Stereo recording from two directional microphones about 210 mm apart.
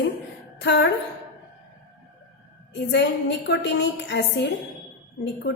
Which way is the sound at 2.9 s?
55° left (ahead or behind).